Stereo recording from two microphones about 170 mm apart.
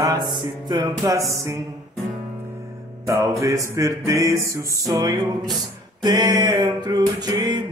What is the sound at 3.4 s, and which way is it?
Music, 20° right (ahead or behind).